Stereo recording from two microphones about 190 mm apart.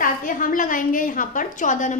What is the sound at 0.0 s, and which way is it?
A woman's voice, 45° left (ahead or behind).